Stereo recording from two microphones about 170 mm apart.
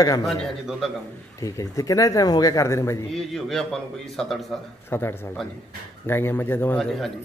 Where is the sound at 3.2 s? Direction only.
Centre (ahead or behind).